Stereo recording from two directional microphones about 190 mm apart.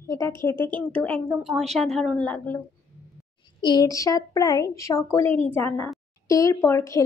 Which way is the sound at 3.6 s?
20° left (ahead or behind).